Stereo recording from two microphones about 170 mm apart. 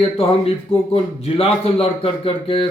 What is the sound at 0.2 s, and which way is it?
A man's voice, 35° left (ahead or behind).